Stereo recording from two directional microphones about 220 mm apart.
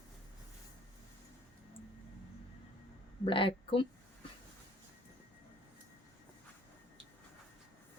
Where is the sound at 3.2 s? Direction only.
25° left (ahead or behind).